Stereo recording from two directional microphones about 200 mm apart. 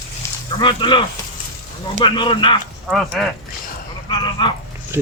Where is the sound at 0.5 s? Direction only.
25° left (ahead or behind).